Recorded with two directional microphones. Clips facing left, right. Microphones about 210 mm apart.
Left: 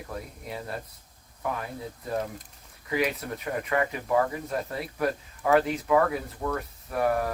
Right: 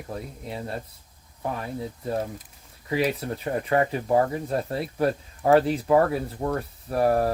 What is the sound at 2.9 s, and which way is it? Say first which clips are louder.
Speech: right 3 dB; 30° right (ahead or behind).